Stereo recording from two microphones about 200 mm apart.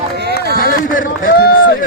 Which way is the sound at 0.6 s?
45° left (ahead or behind).